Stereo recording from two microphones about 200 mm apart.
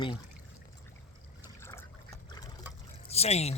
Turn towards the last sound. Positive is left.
turn(degrees=30)  # may be behind; listen again after turning